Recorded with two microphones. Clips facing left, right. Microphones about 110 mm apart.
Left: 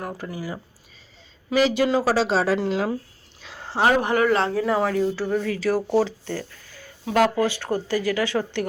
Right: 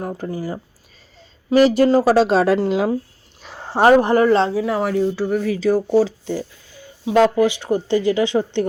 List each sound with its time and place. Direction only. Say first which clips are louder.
0.0 s speech: right 5 dB; 35° right (ahead or behind); by 2.7 s 55° right (ahead or behind)
3.6 s speech: right 7 dB; 40° right (ahead or behind)
4.5 s speech: right 2 dB; 5° right (ahead or behind)
4.9 s speech: right 4 dB; 15° right (ahead or behind)